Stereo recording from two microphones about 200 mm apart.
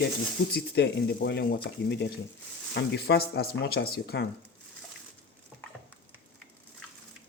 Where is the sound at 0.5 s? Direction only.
55° left (ahead or behind).